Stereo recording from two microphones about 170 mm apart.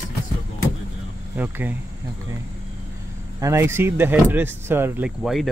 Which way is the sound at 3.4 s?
15° right (ahead or behind).